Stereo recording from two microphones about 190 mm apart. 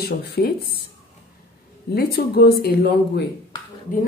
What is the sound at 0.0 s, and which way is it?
Speech, 55° left (ahead or behind).